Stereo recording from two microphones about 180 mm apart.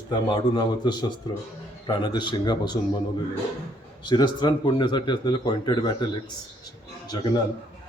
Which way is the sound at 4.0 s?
25° left (ahead or behind).